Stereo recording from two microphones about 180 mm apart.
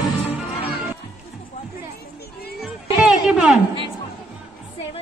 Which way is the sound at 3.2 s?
5° right (ahead or behind).